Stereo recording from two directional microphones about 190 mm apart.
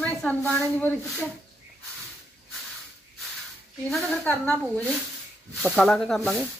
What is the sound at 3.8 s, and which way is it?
Speech, centre (ahead or behind).